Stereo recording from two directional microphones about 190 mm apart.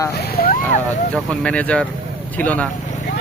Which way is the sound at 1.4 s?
5° left (ahead or behind).